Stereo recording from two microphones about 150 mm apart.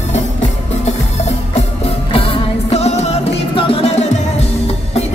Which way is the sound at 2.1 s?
35° left (ahead or behind).